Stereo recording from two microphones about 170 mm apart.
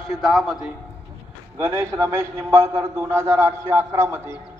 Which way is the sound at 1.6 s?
15° right (ahead or behind).